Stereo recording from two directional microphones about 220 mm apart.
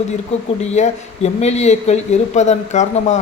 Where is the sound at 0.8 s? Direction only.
30° left (ahead or behind).